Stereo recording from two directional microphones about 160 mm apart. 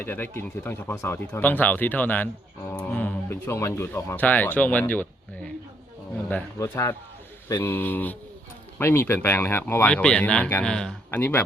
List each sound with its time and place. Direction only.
0.0 s speech: 15° left (ahead or behind)